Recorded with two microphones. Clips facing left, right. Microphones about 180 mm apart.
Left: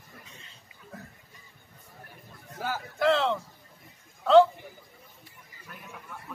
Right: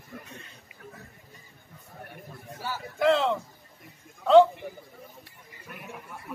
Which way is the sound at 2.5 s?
50° left (ahead or behind).